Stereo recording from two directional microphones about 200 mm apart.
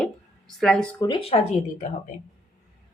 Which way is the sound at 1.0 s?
25° left (ahead or behind).